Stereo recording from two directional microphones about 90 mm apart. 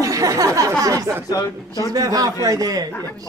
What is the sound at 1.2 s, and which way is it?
Speech, 40° left (ahead or behind).